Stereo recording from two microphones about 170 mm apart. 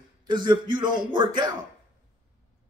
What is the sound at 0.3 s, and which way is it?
Speech, 25° right (ahead or behind).